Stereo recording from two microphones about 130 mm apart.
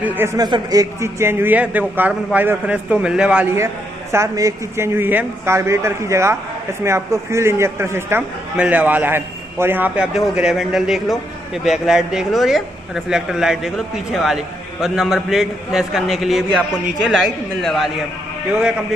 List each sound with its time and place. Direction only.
0.0 s a man's voice: 15° right (ahead or behind)
0.4 s a man's voice: 30° right (ahead or behind); by 3.4 s 5° right (ahead or behind)
3.5 s a man's voice: 20° right (ahead or behind); by 17.8 s centre (ahead or behind)